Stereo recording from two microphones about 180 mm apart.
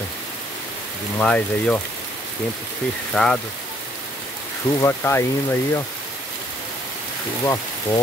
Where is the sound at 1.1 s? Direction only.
5° left (ahead or behind).